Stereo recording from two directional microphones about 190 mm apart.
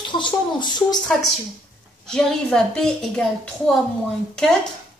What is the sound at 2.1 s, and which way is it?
A woman's voice, 5° left (ahead or behind).